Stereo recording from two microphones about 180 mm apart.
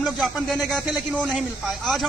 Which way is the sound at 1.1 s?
5° left (ahead or behind).